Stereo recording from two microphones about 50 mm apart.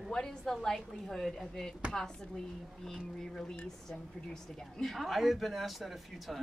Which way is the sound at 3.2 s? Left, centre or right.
Centre.